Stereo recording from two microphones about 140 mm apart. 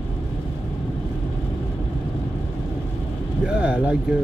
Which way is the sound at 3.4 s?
5° right (ahead or behind).